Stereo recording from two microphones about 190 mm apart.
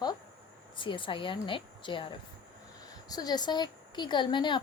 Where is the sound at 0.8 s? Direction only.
25° left (ahead or behind).